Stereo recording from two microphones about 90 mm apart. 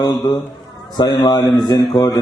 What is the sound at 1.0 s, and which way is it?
Speech, 55° left (ahead or behind).